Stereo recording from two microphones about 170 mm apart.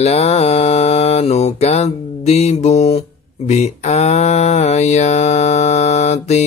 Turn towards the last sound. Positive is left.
turn(degrees=40)  # may be behind; listen again after turning